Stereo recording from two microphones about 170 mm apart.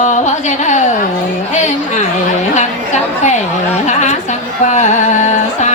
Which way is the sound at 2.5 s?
45° left (ahead or behind).